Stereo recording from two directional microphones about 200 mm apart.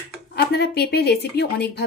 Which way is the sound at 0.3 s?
55° left (ahead or behind).